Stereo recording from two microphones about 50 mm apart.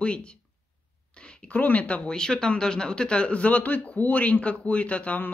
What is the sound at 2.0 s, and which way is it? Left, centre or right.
Speech, centre.